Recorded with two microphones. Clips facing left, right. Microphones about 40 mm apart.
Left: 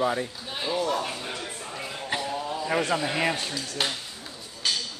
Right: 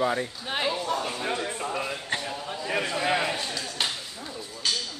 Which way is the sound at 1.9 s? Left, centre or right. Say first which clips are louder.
Left 1 dB; centre.